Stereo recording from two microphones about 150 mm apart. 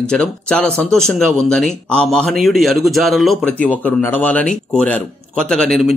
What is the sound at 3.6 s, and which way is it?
Speech, 10° left (ahead or behind).